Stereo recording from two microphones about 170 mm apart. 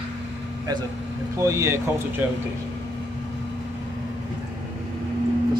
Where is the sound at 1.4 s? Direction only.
15° right (ahead or behind).